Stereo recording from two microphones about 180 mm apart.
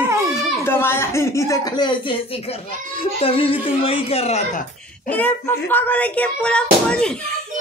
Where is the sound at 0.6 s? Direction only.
15° left (ahead or behind); by 5.1 s 40° left (ahead or behind).